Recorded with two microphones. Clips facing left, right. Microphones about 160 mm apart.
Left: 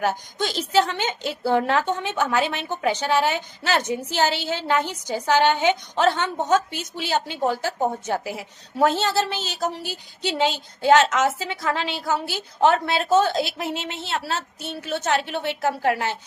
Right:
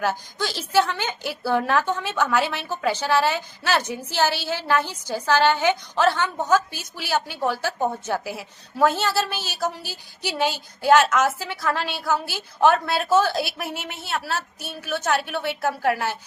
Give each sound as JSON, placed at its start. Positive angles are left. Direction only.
{"t": 0.0, "sound": "a woman's voice", "side_deg": 20}